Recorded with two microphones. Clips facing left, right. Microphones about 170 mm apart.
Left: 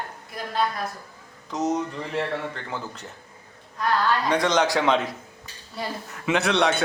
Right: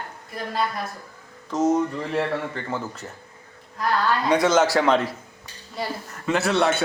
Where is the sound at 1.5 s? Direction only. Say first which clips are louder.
Right 5 dB; centre (ahead or behind).